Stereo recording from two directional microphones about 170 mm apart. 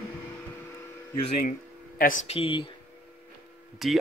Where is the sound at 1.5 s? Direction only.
55° left (ahead or behind).